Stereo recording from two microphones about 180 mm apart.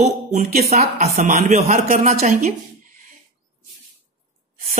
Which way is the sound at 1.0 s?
40° right (ahead or behind).